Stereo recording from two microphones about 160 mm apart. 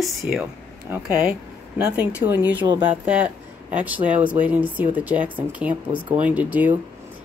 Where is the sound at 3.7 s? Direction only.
10° right (ahead or behind).